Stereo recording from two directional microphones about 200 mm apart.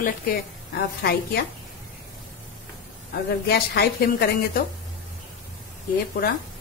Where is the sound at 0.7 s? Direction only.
50° left (ahead or behind).